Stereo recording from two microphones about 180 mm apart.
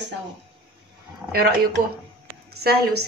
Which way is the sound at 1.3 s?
60° right (ahead or behind).